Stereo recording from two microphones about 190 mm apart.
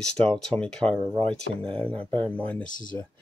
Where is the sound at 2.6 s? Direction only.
45° left (ahead or behind).